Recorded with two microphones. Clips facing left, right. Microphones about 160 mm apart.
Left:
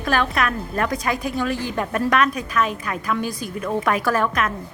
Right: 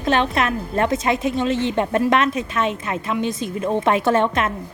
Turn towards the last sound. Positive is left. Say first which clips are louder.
# right 3 dB
turn(degrees=-25)  # may be behind; listen again after turning